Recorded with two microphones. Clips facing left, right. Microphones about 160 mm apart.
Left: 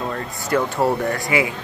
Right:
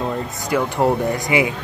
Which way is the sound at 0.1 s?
15° right (ahead or behind).